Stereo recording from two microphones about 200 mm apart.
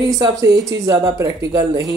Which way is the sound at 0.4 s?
70° right (ahead or behind).